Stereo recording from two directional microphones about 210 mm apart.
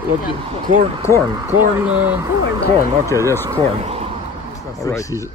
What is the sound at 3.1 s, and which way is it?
Speech, 15° left (ahead or behind).